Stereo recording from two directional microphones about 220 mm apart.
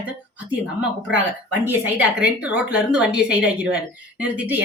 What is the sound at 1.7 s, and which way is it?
A woman's voice, 10° right (ahead or behind).